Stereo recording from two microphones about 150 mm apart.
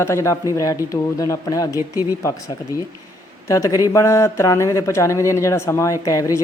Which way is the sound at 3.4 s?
20° left (ahead or behind).